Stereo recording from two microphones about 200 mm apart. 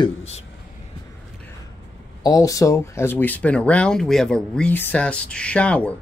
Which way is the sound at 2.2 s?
15° left (ahead or behind).